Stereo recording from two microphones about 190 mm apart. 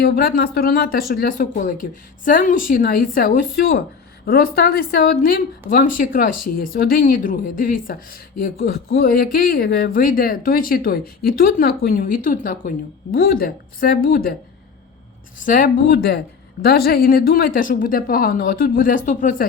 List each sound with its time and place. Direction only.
0.0 s a woman's voice: 50° left (ahead or behind)
15.4 s a woman's voice: 45° left (ahead or behind)